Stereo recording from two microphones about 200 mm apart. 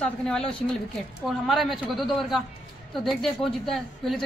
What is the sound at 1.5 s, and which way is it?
A woman's voice, centre (ahead or behind).